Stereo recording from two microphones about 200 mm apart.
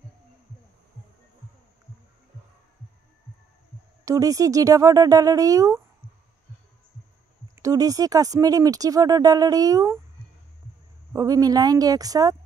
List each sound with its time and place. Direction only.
4.0 s speech: 15° right (ahead or behind)
7.5 s speech: 15° right (ahead or behind)
11.1 s speech: 20° right (ahead or behind)